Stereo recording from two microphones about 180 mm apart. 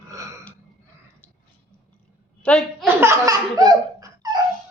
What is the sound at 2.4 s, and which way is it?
Speech, 5° left (ahead or behind).